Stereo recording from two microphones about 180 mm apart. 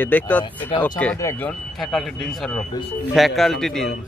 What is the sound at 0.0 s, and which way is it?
Speech, 10° left (ahead or behind).